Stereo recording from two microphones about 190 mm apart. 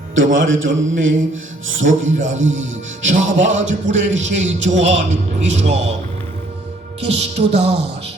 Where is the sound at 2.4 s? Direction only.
85° right.